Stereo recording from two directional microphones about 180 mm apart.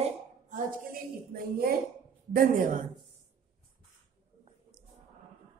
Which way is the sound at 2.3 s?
50° right (ahead or behind).